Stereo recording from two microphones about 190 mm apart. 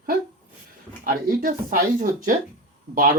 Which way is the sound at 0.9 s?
50° right (ahead or behind).